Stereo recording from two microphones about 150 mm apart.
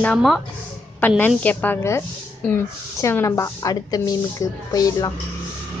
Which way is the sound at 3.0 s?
20° left (ahead or behind).